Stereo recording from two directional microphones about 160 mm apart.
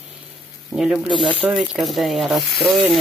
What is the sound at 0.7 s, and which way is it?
Speech, 5° right (ahead or behind).